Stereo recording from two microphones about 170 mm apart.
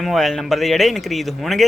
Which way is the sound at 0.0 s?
Centre (ahead or behind).